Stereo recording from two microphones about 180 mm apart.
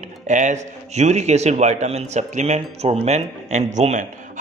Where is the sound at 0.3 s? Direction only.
45° right (ahead or behind).